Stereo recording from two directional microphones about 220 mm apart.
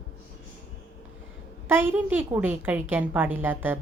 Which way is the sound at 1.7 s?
10° right (ahead or behind).